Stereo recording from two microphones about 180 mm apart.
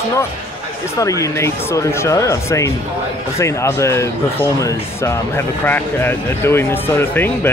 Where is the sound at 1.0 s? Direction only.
15° left (ahead or behind).